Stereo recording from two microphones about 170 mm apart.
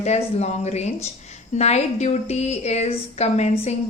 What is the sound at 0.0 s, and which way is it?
A woman's voice, 40° left (ahead or behind).